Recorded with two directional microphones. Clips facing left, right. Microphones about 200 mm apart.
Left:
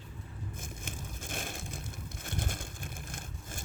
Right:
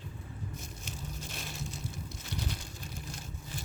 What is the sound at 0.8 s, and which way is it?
Crushing, 50° left (ahead or behind).